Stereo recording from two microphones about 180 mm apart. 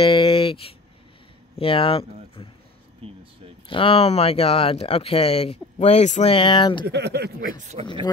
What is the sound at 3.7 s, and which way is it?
Speech, 30° left (ahead or behind).